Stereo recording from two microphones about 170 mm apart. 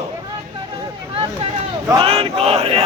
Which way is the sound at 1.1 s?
30° right (ahead or behind).